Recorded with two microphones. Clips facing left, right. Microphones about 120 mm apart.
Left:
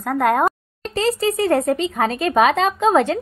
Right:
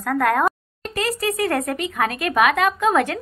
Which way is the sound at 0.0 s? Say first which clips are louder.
Left 2 dB; 20° left (ahead or behind).